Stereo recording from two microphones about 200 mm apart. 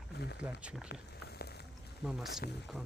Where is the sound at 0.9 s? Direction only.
55° left (ahead or behind).